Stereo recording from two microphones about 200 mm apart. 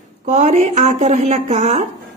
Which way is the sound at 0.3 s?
35° right (ahead or behind).